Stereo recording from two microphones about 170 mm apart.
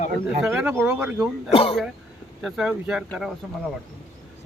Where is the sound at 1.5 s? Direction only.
35° left (ahead or behind).